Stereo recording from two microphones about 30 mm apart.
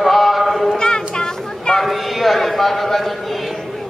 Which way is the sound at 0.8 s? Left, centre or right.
Left.